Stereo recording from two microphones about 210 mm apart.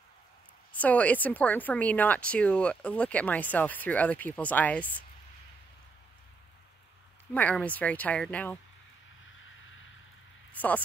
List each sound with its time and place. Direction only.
0.7 s a woman's voice: 5° left (ahead or behind)
7.3 s a woman's voice: 5° left (ahead or behind)
10.5 s speech: 5° left (ahead or behind)